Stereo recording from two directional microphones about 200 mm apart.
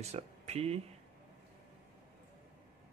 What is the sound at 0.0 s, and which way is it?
Speech, 35° right (ahead or behind).